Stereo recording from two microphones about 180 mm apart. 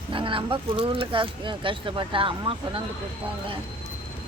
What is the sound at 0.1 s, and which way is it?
Speech, 30° right (ahead or behind).